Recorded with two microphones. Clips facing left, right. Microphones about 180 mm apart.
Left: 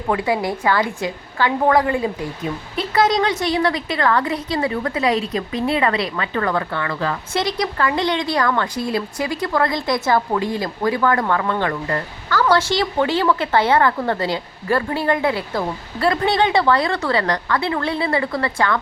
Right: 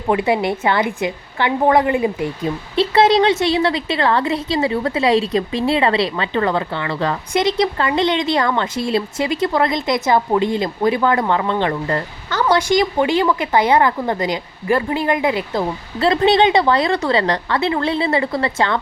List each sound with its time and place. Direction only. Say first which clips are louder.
0.1 s a woman's voice: right 3 dB; 20° right (ahead or behind)